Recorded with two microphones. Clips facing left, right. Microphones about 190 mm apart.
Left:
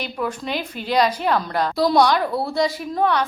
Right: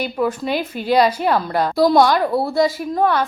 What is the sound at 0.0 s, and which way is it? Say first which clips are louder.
A woman's voice: right 6 dB; 10° right (ahead or behind).